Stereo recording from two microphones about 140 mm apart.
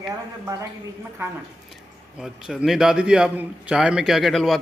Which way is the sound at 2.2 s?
5° right (ahead or behind).